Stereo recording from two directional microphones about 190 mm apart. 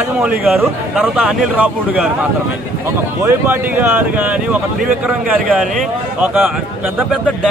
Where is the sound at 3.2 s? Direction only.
10° right (ahead or behind).